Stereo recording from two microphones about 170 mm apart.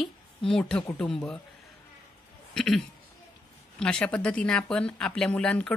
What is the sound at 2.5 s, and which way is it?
Speech, centre (ahead or behind).